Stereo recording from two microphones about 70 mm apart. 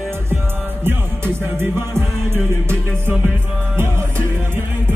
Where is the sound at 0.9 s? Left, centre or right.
Right.